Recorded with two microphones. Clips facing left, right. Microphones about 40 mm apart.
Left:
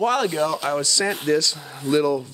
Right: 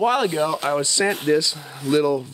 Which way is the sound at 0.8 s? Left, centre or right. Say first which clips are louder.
Right 2 dB; right.